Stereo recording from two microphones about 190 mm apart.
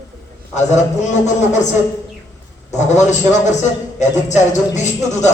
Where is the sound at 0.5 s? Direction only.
40° left (ahead or behind).